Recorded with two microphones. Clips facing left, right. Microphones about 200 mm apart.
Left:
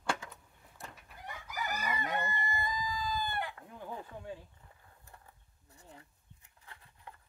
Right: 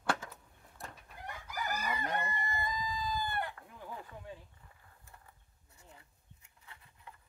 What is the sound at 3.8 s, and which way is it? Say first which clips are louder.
Chopping: left 4 dB; 25° left (ahead or behind).